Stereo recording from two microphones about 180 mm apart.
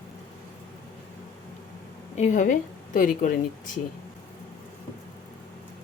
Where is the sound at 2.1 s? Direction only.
45° left (ahead or behind).